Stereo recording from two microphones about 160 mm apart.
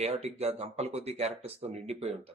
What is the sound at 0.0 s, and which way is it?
Speech, 40° right (ahead or behind).